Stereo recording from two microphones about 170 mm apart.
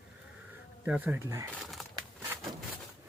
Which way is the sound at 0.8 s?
10° right (ahead or behind).